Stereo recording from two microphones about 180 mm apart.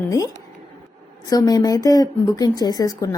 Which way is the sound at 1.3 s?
20° left (ahead or behind).